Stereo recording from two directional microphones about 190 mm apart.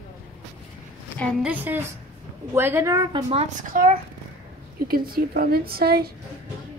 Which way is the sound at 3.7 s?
45° right (ahead or behind).